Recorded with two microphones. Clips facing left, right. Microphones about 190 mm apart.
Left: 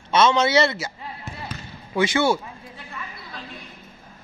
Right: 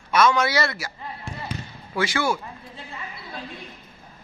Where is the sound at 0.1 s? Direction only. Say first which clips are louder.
Left 2 dB; 25° left (ahead or behind).